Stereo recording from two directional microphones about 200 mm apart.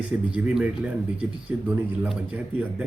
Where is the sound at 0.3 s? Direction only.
5° right (ahead or behind).